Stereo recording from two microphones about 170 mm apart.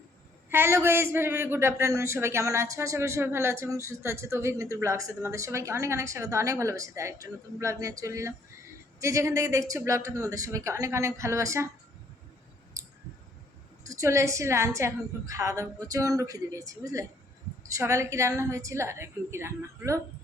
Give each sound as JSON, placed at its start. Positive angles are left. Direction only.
{"t": 0.5, "sound": "a man's voice", "side_deg": -15}
{"t": 12.8, "sound": "a sound", "side_deg": -20}
{"t": 13.8, "sound": "a woman's voice", "side_deg": -20}